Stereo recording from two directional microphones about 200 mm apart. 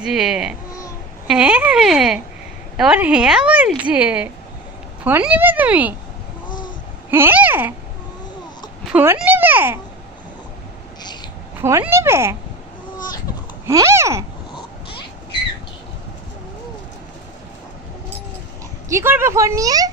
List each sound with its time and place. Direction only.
0.0 s speech: centre (ahead or behind)
6.5 s a sound: 20° left (ahead or behind)
7.1 s speech: 10° right (ahead or behind)
8.8 s speech: 5° right (ahead or behind)
11.0 s babbling: 20° left (ahead or behind)
11.6 s speech: 10° right (ahead or behind)
13.7 s speech: 15° right (ahead or behind)
18.9 s speech: 10° right (ahead or behind)